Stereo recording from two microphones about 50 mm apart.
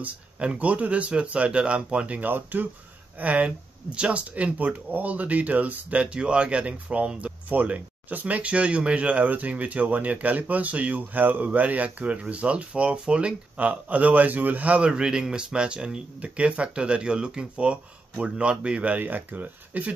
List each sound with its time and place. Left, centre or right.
0.0 s speech: right
14.9 s speech: centre
18.9 s speech: right